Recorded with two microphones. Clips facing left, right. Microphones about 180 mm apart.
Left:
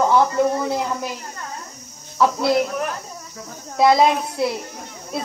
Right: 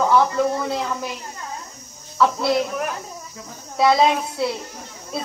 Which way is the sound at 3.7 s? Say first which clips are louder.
Left 2 dB; 20° left (ahead or behind).